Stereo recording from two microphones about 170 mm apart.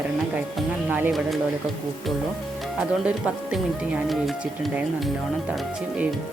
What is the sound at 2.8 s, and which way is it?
Speech, 5° right (ahead or behind).